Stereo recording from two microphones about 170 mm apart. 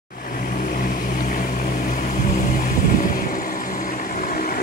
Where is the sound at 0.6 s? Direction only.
50° left (ahead or behind).